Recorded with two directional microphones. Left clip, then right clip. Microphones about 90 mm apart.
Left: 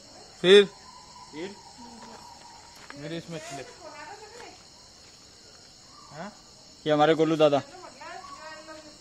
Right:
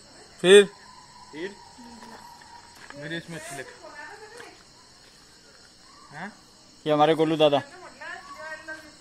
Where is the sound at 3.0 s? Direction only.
50° left (ahead or behind).